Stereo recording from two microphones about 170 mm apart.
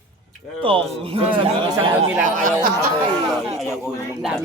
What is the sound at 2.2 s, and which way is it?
Speech, 50° right (ahead or behind).